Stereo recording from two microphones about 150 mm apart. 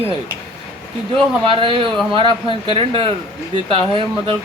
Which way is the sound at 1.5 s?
35° right (ahead or behind).